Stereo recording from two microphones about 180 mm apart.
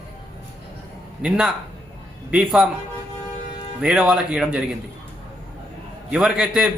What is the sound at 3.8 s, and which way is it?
Speech, 5° right (ahead or behind).